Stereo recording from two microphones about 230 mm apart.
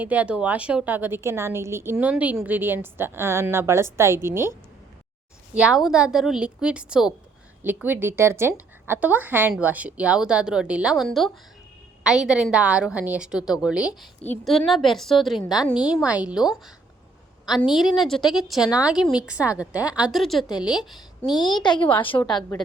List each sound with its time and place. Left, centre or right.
0.0 s a woman's voice: centre
5.5 s a woman's voice: centre
21.6 s a woman's voice: centre